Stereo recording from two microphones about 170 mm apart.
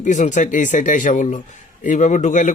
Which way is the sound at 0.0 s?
45° left (ahead or behind).